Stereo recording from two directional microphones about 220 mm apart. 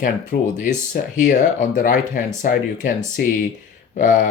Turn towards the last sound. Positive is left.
turn(degrees=35)  # may be behind; listen again after turning